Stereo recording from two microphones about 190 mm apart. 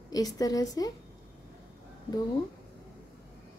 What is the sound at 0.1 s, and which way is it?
Speech, 20° left (ahead or behind).